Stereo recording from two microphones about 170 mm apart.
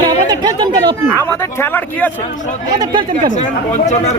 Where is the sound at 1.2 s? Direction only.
15° left (ahead or behind).